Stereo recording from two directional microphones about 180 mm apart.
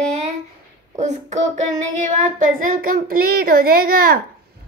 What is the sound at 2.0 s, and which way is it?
Speech, 45° right (ahead or behind).